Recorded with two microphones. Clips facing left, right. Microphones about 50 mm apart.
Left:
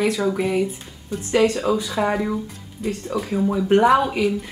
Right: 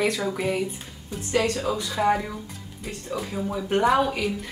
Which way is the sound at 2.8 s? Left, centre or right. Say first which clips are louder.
Left 10 dB; centre.